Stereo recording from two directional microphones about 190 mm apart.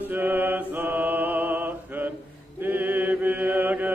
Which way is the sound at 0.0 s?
10° right (ahead or behind).